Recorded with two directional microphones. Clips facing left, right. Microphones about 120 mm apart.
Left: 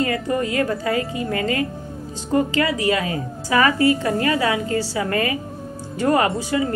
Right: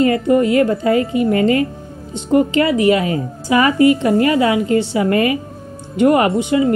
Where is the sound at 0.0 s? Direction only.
25° right (ahead or behind).